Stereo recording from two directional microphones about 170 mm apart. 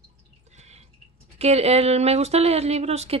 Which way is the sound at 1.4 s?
40° right (ahead or behind).